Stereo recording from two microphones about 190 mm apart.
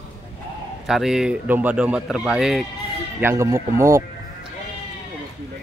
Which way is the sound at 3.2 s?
15° right (ahead or behind).